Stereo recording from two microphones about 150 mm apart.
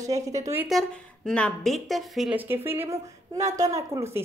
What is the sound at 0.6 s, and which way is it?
Speech, centre (ahead or behind).